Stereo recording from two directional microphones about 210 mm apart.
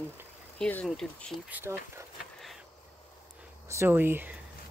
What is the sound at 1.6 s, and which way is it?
Speech, 10° right (ahead or behind).